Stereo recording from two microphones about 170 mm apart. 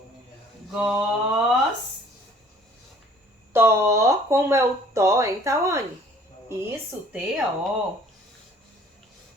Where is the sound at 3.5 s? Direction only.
15° right (ahead or behind).